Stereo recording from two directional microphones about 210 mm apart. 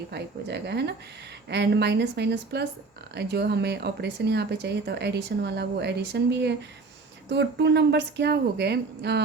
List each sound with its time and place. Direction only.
0.1 s speech: 50° right (ahead or behind)